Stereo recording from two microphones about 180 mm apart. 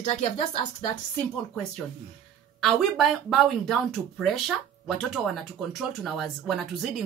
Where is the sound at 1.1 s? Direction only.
5° left (ahead or behind).